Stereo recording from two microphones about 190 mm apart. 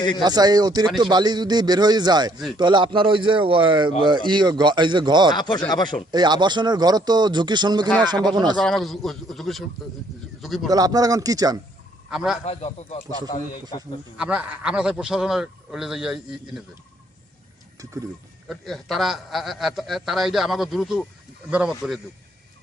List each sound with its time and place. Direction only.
0.2 s a man's voice: 20° right (ahead or behind)
5.4 s speech: 20° left (ahead or behind)
6.1 s a man's voice: 20° right (ahead or behind)
8.5 s a man's voice: centre (ahead or behind)
10.7 s a man's voice: 20° right (ahead or behind)
12.1 s a man's voice: centre (ahead or behind)
12.5 s speech: 30° left (ahead or behind)
14.2 s a man's voice: 5° right (ahead or behind)
18.4 s a man's voice: centre (ahead or behind)